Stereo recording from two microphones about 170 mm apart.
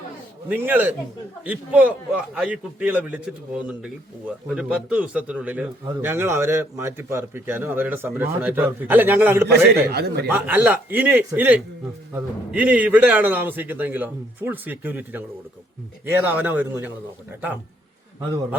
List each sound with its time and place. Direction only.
0.4 s a man's voice: 10° right (ahead or behind)
9.9 s speech: 70° right (ahead or behind)
10.2 s a man's voice: 10° right (ahead or behind)